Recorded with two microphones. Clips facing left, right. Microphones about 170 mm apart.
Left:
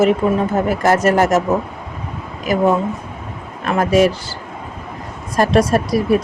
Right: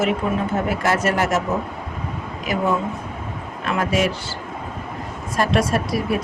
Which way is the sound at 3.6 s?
40° left (ahead or behind).